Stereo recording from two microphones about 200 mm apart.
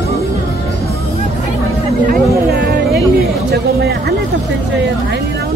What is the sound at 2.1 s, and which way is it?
Music, 50° right (ahead or behind).